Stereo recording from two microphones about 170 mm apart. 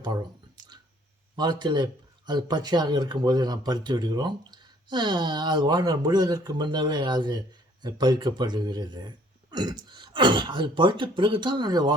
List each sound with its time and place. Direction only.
0.0 s speech: 25° right (ahead or behind)
1.4 s speech: 25° right (ahead or behind)